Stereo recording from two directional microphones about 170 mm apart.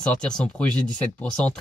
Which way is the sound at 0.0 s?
5° left (ahead or behind).